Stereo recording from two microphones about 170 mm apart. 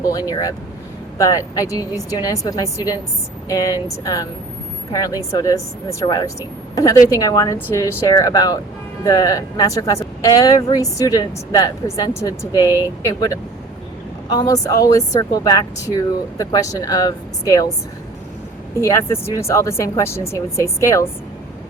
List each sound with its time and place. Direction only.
0.1 s speech: 20° left (ahead or behind)
18.8 s speech: 15° left (ahead or behind)